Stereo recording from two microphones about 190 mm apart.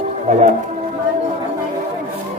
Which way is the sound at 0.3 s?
40° right (ahead or behind).